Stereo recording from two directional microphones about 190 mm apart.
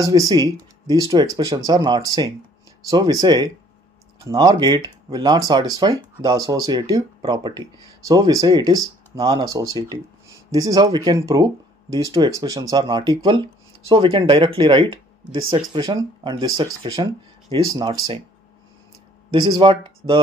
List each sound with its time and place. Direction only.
0.0 s speech: 20° right (ahead or behind)
19.6 s speech: 25° right (ahead or behind)